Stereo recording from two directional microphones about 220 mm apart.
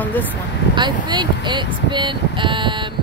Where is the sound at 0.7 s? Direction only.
20° right (ahead or behind).